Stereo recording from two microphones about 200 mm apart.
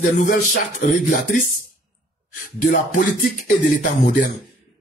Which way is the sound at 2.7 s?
40° left (ahead or behind).